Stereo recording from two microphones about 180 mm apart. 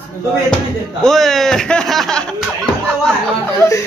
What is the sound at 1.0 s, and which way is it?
Speech, centre (ahead or behind).